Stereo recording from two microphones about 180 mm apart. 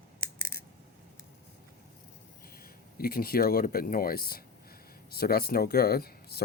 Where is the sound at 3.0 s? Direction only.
55° left (ahead or behind).